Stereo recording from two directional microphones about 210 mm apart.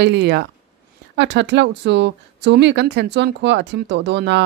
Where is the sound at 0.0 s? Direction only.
55° right (ahead or behind).